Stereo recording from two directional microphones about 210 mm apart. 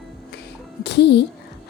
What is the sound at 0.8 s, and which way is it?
Speech, 55° left (ahead or behind).